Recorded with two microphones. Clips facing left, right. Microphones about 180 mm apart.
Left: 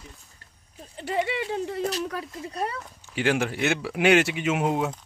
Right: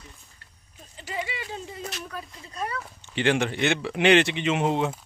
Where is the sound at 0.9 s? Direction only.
60° left (ahead or behind).